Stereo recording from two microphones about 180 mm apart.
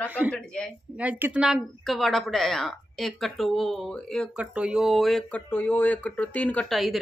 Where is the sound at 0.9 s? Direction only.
10° right (ahead or behind).